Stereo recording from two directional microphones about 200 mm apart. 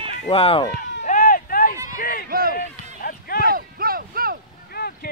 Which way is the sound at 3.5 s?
45° right (ahead or behind).